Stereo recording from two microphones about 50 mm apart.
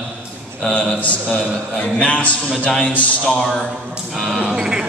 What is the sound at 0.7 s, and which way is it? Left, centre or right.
A man's voice, left.